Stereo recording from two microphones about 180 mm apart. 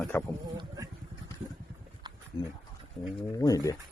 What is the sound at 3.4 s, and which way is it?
Speech, 20° left (ahead or behind).